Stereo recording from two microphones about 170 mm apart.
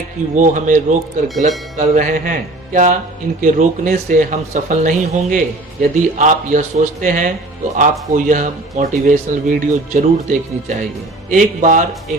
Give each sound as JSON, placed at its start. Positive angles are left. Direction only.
{"t": 0.3, "sound": "a man's voice", "side_deg": -50}